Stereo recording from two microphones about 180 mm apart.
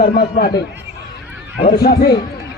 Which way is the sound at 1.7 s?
60° left (ahead or behind).